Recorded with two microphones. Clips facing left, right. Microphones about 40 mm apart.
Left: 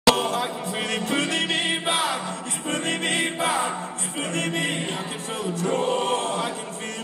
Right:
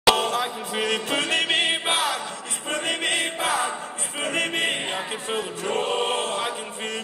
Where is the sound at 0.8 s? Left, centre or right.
Right.